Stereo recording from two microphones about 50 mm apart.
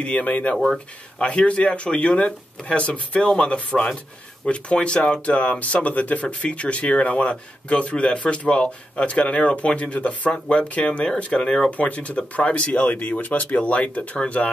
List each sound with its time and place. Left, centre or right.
0.0 s speech: left
11.4 s speech: centre
11.7 s speech: left